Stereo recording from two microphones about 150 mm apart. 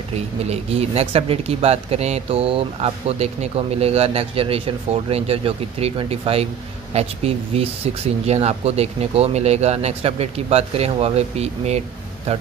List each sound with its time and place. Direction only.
0.5 s speech: 45° right (ahead or behind)